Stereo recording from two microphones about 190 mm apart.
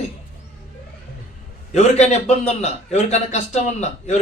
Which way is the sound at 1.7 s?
35° left (ahead or behind).